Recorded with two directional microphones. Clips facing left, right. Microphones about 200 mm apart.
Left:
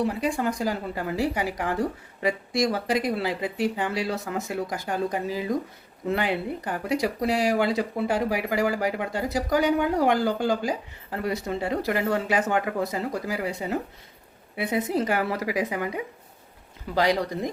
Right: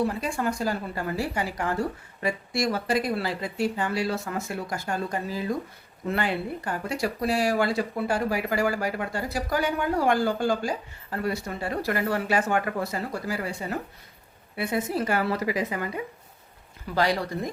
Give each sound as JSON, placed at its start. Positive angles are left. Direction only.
{"t": 0.0, "sound": "speech", "side_deg": 15}